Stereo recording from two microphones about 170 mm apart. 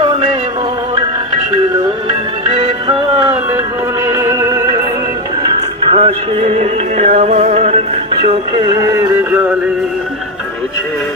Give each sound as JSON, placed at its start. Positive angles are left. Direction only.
{"t": 4.1, "sound": "music", "side_deg": -15}
{"t": 5.9, "sound": "music", "side_deg": -35}
{"t": 8.9, "sound": "music", "side_deg": -15}